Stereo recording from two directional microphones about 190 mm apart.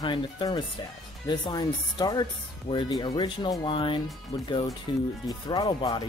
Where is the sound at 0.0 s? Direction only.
25° left (ahead or behind).